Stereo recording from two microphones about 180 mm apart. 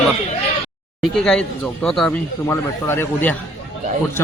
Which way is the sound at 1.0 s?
5° left (ahead or behind).